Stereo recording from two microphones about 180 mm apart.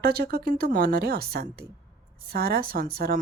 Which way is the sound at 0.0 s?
60° right (ahead or behind).